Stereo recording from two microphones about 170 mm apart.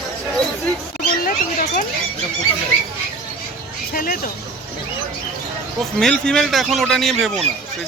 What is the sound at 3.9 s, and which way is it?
Speech, 55° left (ahead or behind).